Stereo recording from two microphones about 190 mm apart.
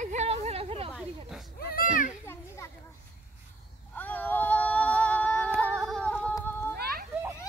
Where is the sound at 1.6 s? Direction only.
55° left (ahead or behind).